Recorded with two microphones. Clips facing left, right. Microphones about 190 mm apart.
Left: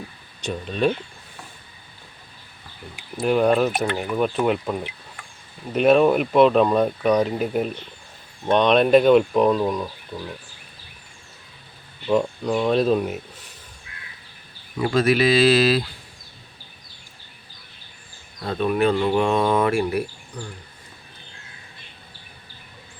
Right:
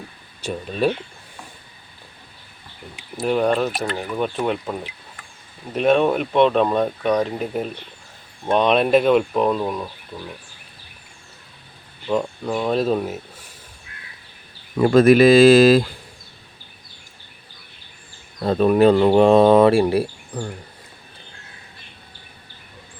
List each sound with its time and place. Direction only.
0.4 s speech: 5° right (ahead or behind)
3.2 s speech: centre (ahead or behind)
12.0 s speech: 5° right (ahead or behind)
14.8 s speech: 50° right (ahead or behind)
18.4 s speech: 40° right (ahead or behind)